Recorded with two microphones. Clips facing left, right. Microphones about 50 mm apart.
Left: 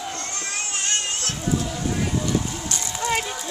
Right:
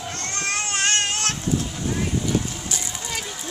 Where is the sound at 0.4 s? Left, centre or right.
Right.